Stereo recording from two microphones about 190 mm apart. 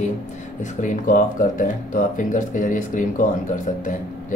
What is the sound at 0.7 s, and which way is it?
A man's voice, 45° left (ahead or behind).